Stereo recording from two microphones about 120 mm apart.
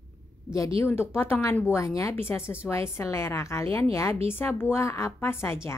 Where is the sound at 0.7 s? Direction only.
20° left (ahead or behind).